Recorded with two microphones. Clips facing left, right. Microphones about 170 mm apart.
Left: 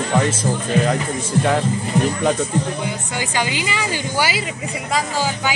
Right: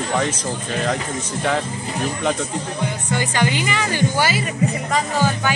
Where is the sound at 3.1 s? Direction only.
10° left (ahead or behind).